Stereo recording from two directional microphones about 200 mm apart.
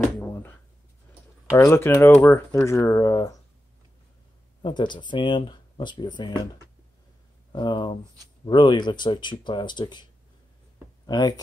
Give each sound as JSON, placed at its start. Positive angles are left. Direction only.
{"t": 0.0, "sound": "a sound", "side_deg": 10}
{"t": 1.5, "sound": "speech", "side_deg": 15}
{"t": 4.6, "sound": "speech", "side_deg": 20}
{"t": 7.5, "sound": "speech", "side_deg": 25}
{"t": 11.1, "sound": "speech", "side_deg": 20}